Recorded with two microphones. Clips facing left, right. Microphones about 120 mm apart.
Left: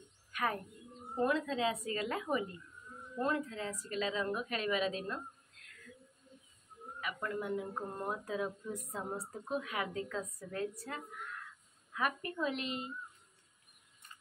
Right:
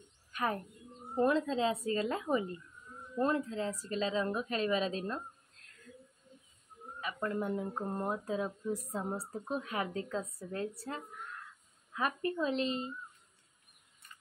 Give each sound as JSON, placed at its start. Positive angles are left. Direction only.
{"t": 0.3, "sound": "bird", "side_deg": -30}
{"t": 1.1, "sound": "a woman's voice", "side_deg": -30}
{"t": 7.0, "sound": "a woman's voice", "side_deg": -30}